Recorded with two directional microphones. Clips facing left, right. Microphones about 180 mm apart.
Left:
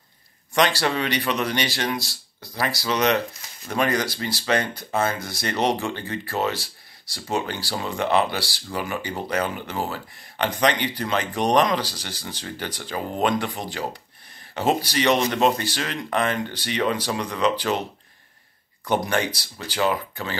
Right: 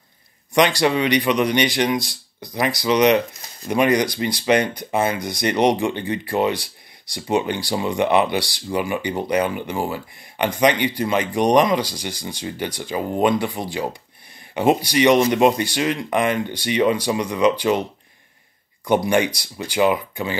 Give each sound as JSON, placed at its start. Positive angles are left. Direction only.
{"t": 0.6, "sound": "speech", "side_deg": -15}
{"t": 18.9, "sound": "speech", "side_deg": -10}